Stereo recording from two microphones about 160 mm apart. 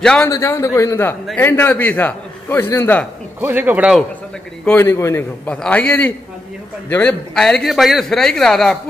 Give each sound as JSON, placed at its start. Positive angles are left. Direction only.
{"t": 0.0, "sound": "a man's voice", "side_deg": 5}
{"t": 0.3, "sound": "a man's voice", "side_deg": 20}
{"t": 3.3, "sound": "a man's voice", "side_deg": -10}
{"t": 4.6, "sound": "a man's voice", "side_deg": 15}